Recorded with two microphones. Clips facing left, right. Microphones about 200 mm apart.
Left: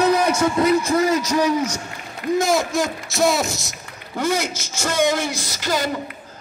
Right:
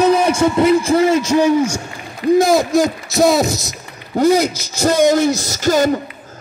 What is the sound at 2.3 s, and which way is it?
A man's voice, 35° right (ahead or behind).